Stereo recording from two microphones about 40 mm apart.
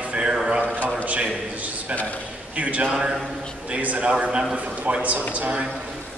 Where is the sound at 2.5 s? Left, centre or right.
Right.